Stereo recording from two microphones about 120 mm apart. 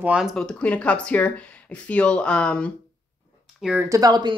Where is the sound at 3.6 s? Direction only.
10° right (ahead or behind).